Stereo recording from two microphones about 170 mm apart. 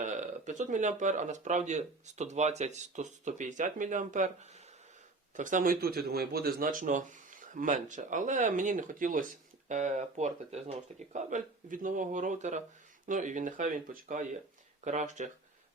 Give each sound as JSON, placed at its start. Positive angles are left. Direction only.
{"t": 0.0, "sound": "speech", "side_deg": -45}